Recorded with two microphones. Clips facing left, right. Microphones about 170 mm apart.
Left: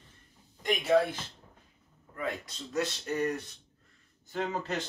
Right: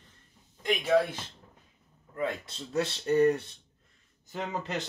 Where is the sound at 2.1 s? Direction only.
30° right (ahead or behind).